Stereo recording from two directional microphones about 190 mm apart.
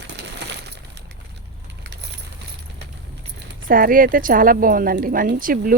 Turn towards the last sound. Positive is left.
turn(degrees=-45)  # may be behind; listen again after turning